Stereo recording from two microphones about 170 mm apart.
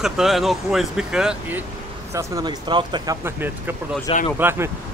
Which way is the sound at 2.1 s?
20° right (ahead or behind).